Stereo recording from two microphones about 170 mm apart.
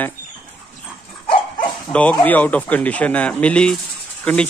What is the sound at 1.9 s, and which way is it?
Speech, 10° left (ahead or behind).